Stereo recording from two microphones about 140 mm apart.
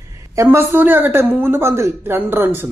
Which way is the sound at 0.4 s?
15° right (ahead or behind).